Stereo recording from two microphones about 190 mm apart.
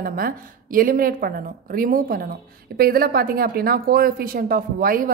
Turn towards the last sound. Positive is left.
turn(degrees=-50)  # may be behind; listen again after turning